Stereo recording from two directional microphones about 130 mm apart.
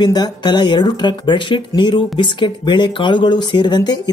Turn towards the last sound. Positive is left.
turn(degrees=35)  # may be behind; listen again after turning